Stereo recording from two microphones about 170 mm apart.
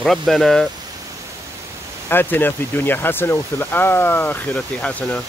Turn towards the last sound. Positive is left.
turn(degrees=5)  # may be behind; listen again after turning